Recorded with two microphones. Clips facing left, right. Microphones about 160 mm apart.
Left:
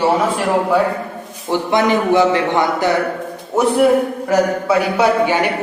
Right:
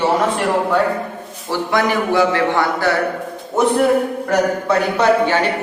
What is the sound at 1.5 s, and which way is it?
A man's voice, 20° left (ahead or behind).